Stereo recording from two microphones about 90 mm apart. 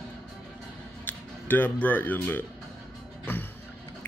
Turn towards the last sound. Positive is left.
turn(degrees=25)  # may be behind; listen again after turning